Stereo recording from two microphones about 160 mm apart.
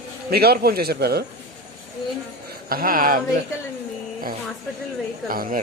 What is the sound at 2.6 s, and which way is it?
Speech, 65° right (ahead or behind).